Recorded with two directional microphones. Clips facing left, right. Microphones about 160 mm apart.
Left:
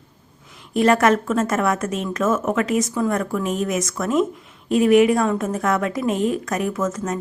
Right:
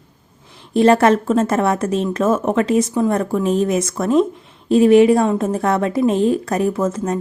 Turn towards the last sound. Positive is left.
turn(degrees=-30)  # may be behind; listen again after turning